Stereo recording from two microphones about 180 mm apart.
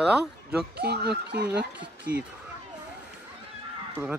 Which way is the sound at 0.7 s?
65° right (ahead or behind).